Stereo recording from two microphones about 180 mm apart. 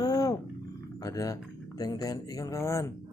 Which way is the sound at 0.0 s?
20° left (ahead or behind).